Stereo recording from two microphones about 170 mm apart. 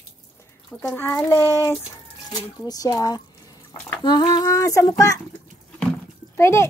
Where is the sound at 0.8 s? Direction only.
10° left (ahead or behind).